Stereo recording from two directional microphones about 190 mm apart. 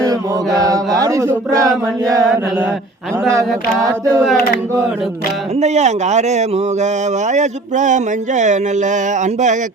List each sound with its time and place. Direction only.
0.0 s mantra: 20° right (ahead or behind)
0.9 s speech: 15° right (ahead or behind)
3.3 s female singing: 15° right (ahead or behind)
5.5 s speech: 35° right (ahead or behind)